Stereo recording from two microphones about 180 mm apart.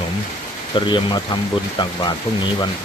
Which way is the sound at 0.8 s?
25° left (ahead or behind).